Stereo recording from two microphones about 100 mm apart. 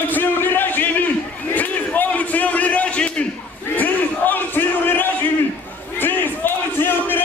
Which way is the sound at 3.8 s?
20° left (ahead or behind).